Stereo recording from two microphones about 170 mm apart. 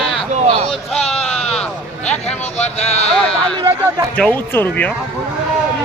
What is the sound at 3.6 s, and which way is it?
Speech, 20° right (ahead or behind).